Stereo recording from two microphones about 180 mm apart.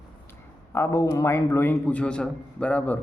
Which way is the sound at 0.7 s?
15° left (ahead or behind).